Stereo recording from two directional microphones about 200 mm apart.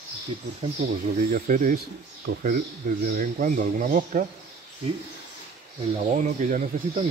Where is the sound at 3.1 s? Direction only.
40° right (ahead or behind).